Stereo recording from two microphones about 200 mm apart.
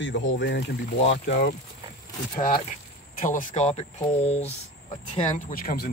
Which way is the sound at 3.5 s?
30° left (ahead or behind).